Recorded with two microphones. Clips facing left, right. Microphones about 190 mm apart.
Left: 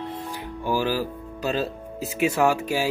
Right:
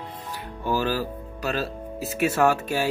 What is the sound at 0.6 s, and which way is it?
Speech, 10° left (ahead or behind).